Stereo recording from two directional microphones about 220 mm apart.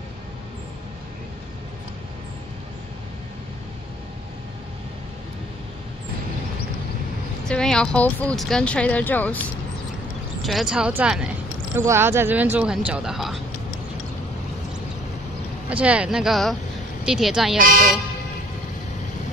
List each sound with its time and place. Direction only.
7.4 s speech: 5° left (ahead or behind)
10.4 s speech: centre (ahead or behind)
15.7 s speech: 5° right (ahead or behind)
17.6 s speech: 40° right (ahead or behind)